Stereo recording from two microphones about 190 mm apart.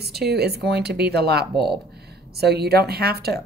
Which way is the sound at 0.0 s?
60° right (ahead or behind).